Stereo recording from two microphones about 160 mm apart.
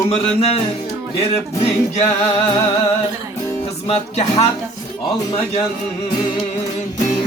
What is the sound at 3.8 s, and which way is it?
Speech, 40° left (ahead or behind).